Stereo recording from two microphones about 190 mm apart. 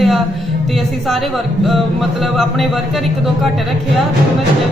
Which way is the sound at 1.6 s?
Centre (ahead or behind).